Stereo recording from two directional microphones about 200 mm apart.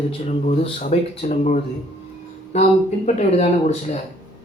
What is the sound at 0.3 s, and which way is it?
Speech, 35° left (ahead or behind).